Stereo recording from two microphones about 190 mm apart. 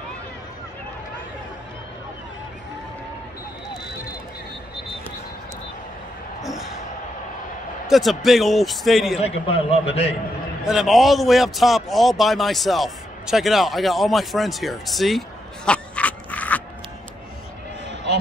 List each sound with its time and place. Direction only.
7.9 s a man's voice: centre (ahead or behind)
9.2 s a man's voice: 30° left (ahead or behind)
10.6 s a man's voice: centre (ahead or behind)